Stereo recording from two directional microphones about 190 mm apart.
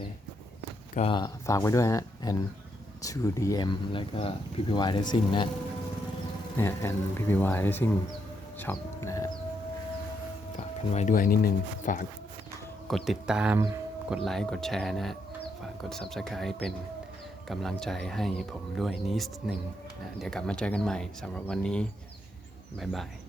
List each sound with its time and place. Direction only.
0.9 s speech: 25° left (ahead or behind)
6.6 s speech: 10° left (ahead or behind)
8.5 s a sound: 10° left (ahead or behind)
10.6 s speech: 35° left (ahead or behind)
12.9 s speech: centre (ahead or behind)